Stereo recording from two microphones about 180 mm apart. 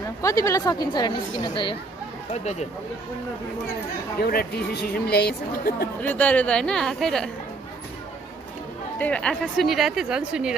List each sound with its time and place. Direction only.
0.2 s a woman's voice: 20° left (ahead or behind)
4.2 s a woman's voice: 60° left (ahead or behind)
6.0 s speech: 10° left (ahead or behind)
9.0 s speech: 5° left (ahead or behind)